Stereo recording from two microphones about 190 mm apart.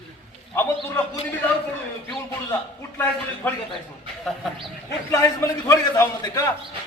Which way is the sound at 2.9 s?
10° left (ahead or behind).